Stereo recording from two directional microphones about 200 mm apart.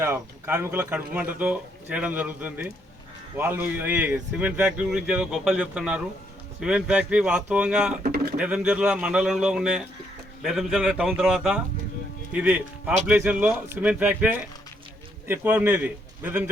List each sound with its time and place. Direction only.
0.0 s speech: 10° right (ahead or behind)
8.0 s a sound: 50° right (ahead or behind)
8.4 s speech: 5° right (ahead or behind)